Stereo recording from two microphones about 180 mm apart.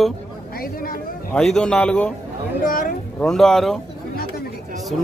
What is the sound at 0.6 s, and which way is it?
Speech, 55° left (ahead or behind).